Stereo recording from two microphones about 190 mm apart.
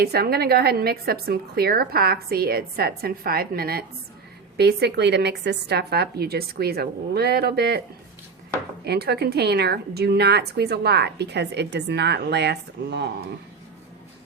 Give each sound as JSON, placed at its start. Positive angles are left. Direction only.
{"t": 0.0, "sound": "a woman's voice", "side_deg": -55}
{"t": 8.8, "sound": "a woman's voice", "side_deg": -60}